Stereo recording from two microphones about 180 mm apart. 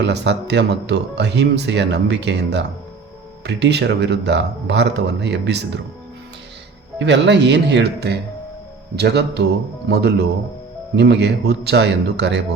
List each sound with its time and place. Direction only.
0.0 s speech: 70° right (ahead or behind)
7.0 s speech: 75° right (ahead or behind)
10.9 s speech: 70° right (ahead or behind)